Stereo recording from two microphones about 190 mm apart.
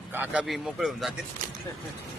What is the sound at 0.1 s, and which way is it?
Speech, 10° right (ahead or behind).